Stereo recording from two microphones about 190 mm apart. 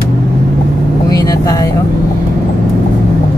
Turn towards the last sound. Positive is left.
turn(degrees=15)  # may be behind; listen again after turning